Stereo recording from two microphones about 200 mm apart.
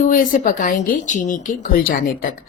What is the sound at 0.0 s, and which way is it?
A woman's voice, 40° left (ahead or behind).